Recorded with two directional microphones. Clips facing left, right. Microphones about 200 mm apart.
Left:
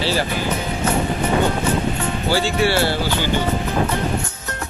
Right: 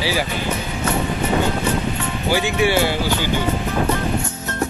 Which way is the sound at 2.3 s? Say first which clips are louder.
Right 1 dB; 15° right (ahead or behind).